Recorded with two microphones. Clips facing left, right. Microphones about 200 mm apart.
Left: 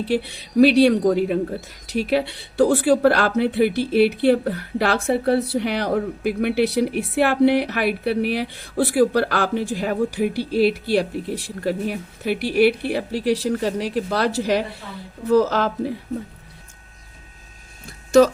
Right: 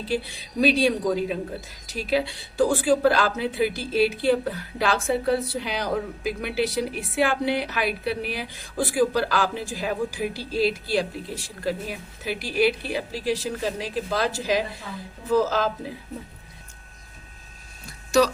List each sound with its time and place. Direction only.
0.0 s speech: 65° left (ahead or behind)